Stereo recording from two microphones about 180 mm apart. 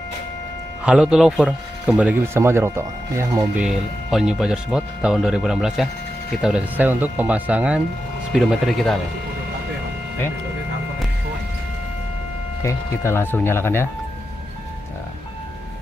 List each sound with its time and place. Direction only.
0.8 s speech: 5° right (ahead or behind)
3.6 s speech: 5° right (ahead or behind)
12.6 s speech: 15° left (ahead or behind)